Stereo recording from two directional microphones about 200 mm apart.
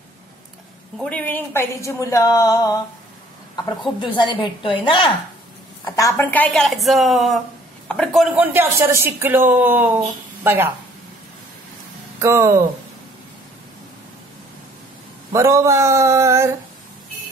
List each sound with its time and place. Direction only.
0.9 s a woman's voice: 5° left (ahead or behind); by 10.7 s 10° right (ahead or behind)
12.2 s speech: 15° right (ahead or behind)
15.3 s speech: 15° right (ahead or behind)